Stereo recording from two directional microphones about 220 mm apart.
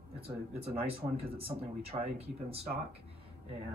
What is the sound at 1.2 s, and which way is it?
Speech, 25° right (ahead or behind).